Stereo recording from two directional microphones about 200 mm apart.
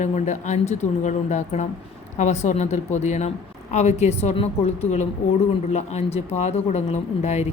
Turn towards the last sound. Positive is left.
turn(degrees=35)  # may be behind; listen again after turning